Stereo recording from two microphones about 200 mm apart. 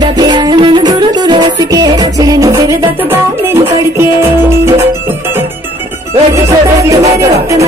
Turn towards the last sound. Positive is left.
turn(degrees=-15)  # may be behind; listen again after turning